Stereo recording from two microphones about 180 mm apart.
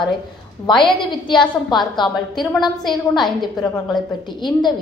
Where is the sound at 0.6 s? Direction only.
25° left (ahead or behind).